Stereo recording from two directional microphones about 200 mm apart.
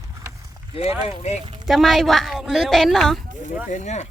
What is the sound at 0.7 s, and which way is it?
Speech, 30° left (ahead or behind).